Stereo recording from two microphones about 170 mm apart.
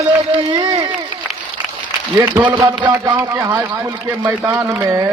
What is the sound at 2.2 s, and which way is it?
Speech, 15° right (ahead or behind).